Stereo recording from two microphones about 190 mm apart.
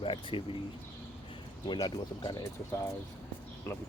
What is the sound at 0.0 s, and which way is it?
Speech, 25° left (ahead or behind).